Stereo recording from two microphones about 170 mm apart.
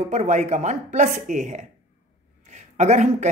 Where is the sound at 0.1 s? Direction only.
45° right (ahead or behind).